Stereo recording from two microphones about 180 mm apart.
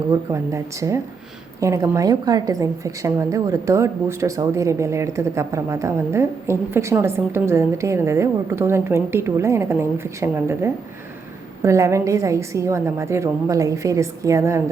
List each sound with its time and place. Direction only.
0.3 s a woman's voice: 15° right (ahead or behind)